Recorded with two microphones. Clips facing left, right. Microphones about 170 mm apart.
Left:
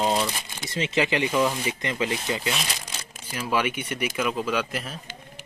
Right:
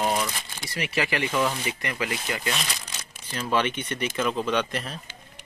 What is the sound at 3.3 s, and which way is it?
Speech, 10° left (ahead or behind).